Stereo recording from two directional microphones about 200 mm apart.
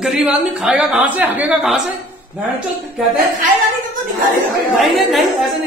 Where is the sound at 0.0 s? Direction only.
5° right (ahead or behind).